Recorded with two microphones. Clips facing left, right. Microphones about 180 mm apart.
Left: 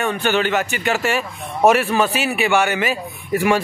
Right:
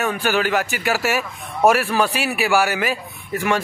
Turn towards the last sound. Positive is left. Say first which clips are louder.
# left 4 dB
turn(degrees=10)  # may be behind; listen again after turning